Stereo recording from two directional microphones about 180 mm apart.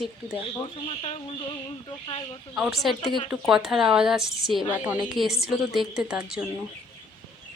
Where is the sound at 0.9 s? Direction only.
30° left (ahead or behind).